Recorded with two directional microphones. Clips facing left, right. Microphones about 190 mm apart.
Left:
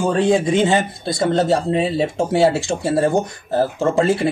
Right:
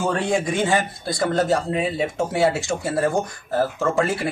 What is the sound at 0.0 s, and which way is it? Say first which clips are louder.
Speech: left 5 dB; 20° left (ahead or behind).